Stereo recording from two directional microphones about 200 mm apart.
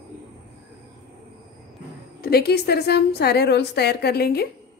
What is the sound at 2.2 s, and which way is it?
A woman's voice, 50° left (ahead or behind).